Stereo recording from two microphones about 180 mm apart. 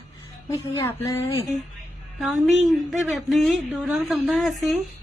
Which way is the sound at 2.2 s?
Centre (ahead or behind).